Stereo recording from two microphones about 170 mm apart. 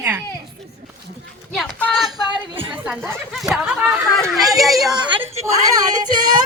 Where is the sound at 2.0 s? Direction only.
25° right (ahead or behind).